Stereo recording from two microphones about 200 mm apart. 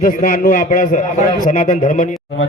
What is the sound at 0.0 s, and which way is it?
A man's voice, 45° left (ahead or behind).